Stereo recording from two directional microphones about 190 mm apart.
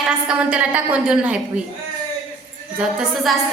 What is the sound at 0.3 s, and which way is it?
A woman's voice, 5° right (ahead or behind).